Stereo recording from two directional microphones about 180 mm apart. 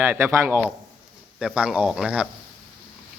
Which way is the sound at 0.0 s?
10° right (ahead or behind).